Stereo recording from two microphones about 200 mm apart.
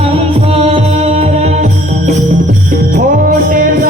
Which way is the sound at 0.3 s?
30° right (ahead or behind).